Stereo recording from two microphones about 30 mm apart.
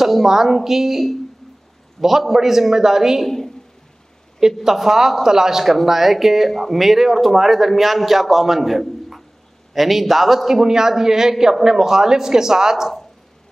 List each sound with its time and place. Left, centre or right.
0.0 s a man's voice: centre
3.3 s a sound: centre
4.6 s a man's voice: centre
5.7 s a man's voice: centre